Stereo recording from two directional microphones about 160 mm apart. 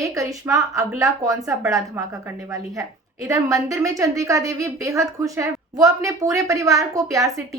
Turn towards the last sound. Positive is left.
turn(degrees=-20)  # may be behind; listen again after turning